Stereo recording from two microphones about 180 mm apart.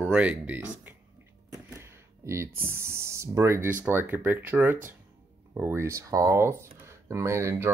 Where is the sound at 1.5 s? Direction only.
15° right (ahead or behind).